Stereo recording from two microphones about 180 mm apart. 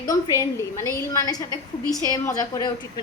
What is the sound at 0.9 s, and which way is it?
A woman's voice, 20° left (ahead or behind).